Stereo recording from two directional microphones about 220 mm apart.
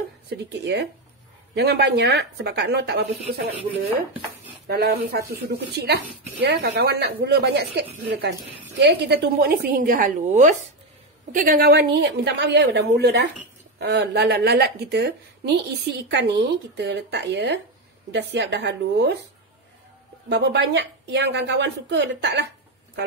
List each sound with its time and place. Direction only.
0.3 s speech: 50° right (ahead or behind)
4.6 s speech: 45° right (ahead or behind)
20.2 s speech: 50° right (ahead or behind)